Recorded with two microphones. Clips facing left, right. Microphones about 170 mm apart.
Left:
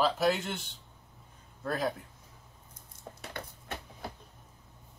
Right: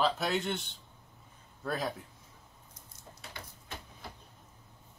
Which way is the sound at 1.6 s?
Centre (ahead or behind).